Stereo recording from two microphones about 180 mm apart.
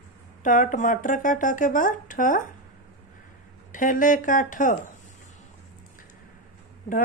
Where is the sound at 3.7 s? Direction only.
45° left (ahead or behind).